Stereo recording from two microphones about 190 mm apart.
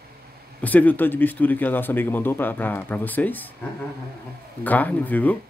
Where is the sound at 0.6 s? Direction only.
10° left (ahead or behind).